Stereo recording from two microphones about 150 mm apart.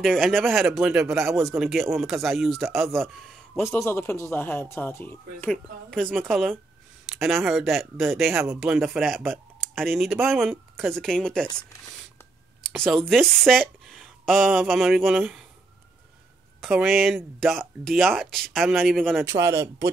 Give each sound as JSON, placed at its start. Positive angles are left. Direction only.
{"t": 0.0, "sound": "speech", "side_deg": 0}
{"t": 3.5, "sound": "speech", "side_deg": 15}
{"t": 12.6, "sound": "speech", "side_deg": 0}
{"t": 16.6, "sound": "speech", "side_deg": 0}
{"t": 19.2, "sound": "speech", "side_deg": -20}